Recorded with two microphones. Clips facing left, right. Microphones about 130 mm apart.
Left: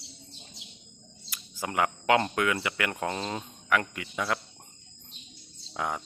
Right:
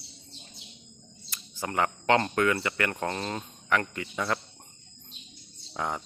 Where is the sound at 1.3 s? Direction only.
10° left (ahead or behind).